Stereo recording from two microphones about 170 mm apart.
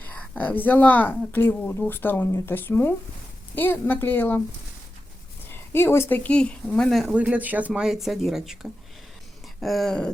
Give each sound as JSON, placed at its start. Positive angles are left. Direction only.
{"t": 0.0, "sound": "a woman's voice", "side_deg": 10}
{"t": 5.5, "sound": "speech", "side_deg": 15}
{"t": 9.6, "sound": "speech", "side_deg": 0}